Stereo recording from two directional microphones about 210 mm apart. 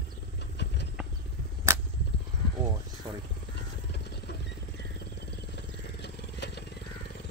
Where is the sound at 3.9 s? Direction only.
50° left (ahead or behind).